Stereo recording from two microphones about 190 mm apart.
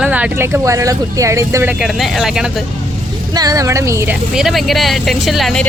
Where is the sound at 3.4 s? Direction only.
20° right (ahead or behind).